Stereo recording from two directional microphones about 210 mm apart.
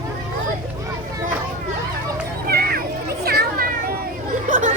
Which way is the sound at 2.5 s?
45° right (ahead or behind).